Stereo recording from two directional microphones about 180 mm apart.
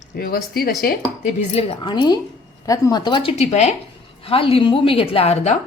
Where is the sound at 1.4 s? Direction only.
30° left (ahead or behind).